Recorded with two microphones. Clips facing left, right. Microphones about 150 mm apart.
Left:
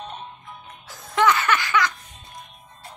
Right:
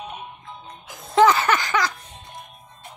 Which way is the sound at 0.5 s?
30° right (ahead or behind).